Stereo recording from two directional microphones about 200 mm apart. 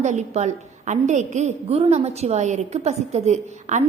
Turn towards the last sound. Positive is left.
turn(degrees=-35)  # may be behind; listen again after turning